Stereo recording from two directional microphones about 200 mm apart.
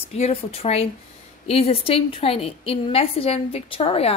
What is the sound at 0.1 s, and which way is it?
A woman's voice, 30° left (ahead or behind).